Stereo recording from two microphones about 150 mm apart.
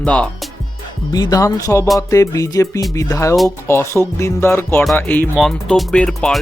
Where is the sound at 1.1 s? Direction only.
25° left (ahead or behind).